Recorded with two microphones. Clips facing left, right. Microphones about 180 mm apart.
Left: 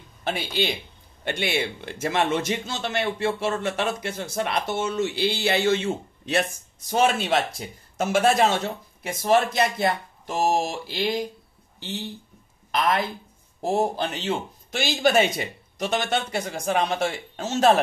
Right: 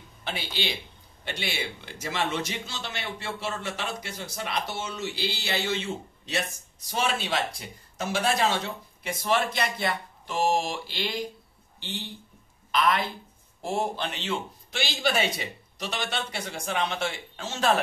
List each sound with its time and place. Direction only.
0.2 s a man's voice: 50° left (ahead or behind)
12.7 s a man's voice: 45° left (ahead or behind)